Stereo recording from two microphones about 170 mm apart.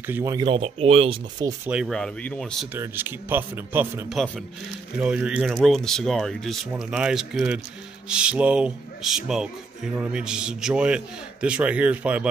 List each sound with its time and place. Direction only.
0.0 s a man's voice: 15° right (ahead or behind)
0.5 s speech: 35° right (ahead or behind)
1.7 s speech: centre (ahead or behind)
2.7 s a man's voice: 10° right (ahead or behind)
4.1 s a man's voice: centre (ahead or behind)